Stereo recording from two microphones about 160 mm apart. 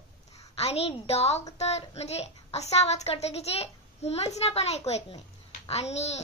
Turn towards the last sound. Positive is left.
turn(degrees=45)  # may be behind; listen again after turning